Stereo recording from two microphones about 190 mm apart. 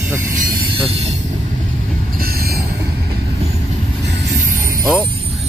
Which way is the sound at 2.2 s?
50° right (ahead or behind).